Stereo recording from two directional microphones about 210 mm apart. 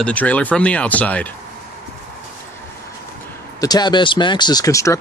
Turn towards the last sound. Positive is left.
turn(degrees=15)  # may be behind; listen again after turning